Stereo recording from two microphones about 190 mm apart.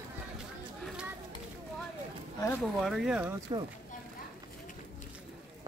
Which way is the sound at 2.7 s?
Centre (ahead or behind).